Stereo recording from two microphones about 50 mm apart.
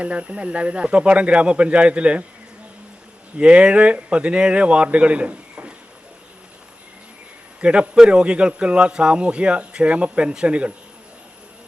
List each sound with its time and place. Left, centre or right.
0.0 s speech: right
3.3 s speech: right
7.6 s speech: centre